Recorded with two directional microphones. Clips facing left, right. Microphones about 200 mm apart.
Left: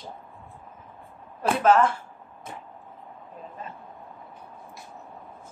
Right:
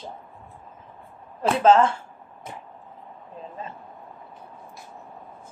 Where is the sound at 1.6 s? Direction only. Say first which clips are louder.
Right 3 dB; 25° right (ahead or behind).